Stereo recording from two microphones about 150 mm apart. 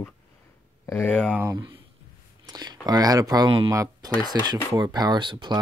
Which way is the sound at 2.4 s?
30° right (ahead or behind).